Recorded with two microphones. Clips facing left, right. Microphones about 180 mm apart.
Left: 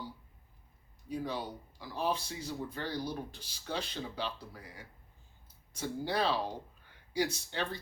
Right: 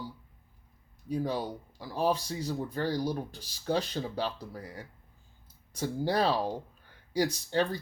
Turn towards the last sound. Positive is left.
turn(degrees=-40)  # may be behind; listen again after turning